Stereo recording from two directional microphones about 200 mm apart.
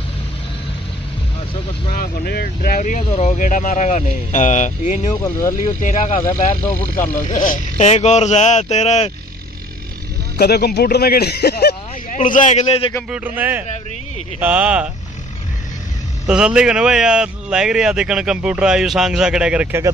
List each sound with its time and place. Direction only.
2.0 s speech: 50° left (ahead or behind)
10.3 s speech: 50° left (ahead or behind); by 12.9 s 30° left (ahead or behind)
13.1 s a man's voice: 10° right (ahead or behind)
16.3 s a man's voice: 5° right (ahead or behind)